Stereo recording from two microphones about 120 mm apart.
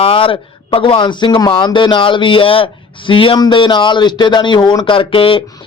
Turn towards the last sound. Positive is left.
turn(degrees=45)  # may be behind; listen again after turning